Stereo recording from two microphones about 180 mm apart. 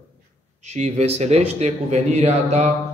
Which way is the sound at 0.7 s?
40° right (ahead or behind).